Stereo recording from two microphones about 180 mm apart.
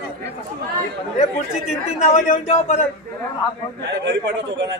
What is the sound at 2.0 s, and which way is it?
Speech, 35° left (ahead or behind).